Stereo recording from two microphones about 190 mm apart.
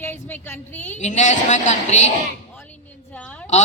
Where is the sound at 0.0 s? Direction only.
10° left (ahead or behind).